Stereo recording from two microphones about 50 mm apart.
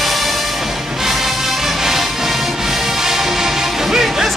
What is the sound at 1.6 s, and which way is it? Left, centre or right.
Music, centre.